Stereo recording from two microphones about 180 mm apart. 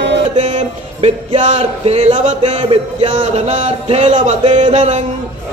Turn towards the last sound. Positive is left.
turn(degrees=-40)  # may be behind; listen again after turning